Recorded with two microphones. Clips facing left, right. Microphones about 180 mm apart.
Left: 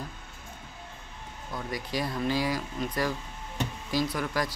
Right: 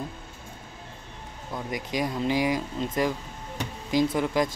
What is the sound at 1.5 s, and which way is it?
Speech, 20° right (ahead or behind).